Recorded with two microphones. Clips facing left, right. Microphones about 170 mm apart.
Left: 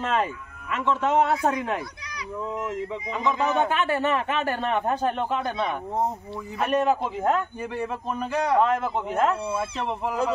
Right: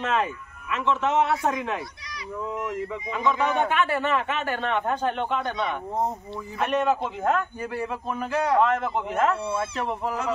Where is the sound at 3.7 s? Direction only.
40° left (ahead or behind).